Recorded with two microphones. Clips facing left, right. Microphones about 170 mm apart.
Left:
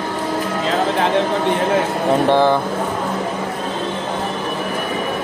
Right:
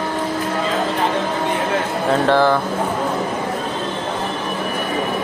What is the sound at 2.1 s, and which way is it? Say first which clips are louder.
Speech: left 1 dB; 20° left (ahead or behind).